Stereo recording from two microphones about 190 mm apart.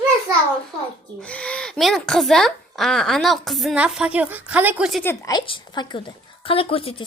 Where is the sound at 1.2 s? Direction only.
5° left (ahead or behind).